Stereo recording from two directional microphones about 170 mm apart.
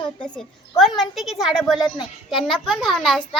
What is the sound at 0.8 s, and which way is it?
A child's voice, centre (ahead or behind).